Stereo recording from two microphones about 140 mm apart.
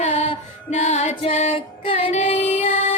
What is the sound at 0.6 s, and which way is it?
Female singing, 50° left (ahead or behind).